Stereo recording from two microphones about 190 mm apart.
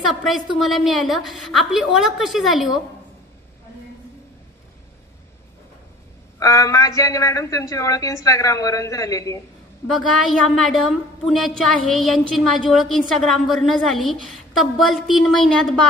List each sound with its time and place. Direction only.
0.1 s a woman's voice: centre (ahead or behind)
6.4 s a woman's voice: 15° left (ahead or behind)
9.8 s a woman's voice: centre (ahead or behind)